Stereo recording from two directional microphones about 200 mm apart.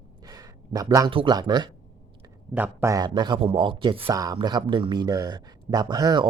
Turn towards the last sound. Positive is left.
turn(degrees=-20)  # may be behind; listen again after turning